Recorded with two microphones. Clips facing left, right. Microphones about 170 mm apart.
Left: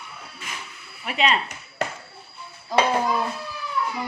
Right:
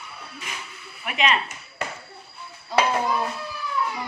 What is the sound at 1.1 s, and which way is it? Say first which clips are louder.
Speech: left 1 dB; 30° left (ahead or behind).